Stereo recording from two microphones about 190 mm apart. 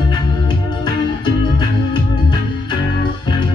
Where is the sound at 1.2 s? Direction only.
25° left (ahead or behind).